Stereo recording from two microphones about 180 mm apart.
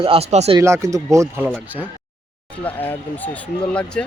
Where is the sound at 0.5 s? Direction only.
15° right (ahead or behind).